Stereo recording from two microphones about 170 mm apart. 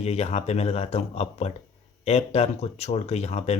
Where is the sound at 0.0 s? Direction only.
40° left (ahead or behind).